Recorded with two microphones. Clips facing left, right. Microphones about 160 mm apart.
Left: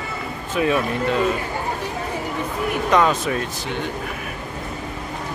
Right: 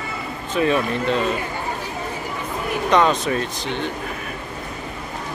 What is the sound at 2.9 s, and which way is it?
Speech, 5° left (ahead or behind).